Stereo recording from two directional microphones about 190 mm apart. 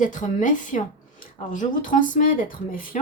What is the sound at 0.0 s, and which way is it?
A woman's voice, 40° left (ahead or behind).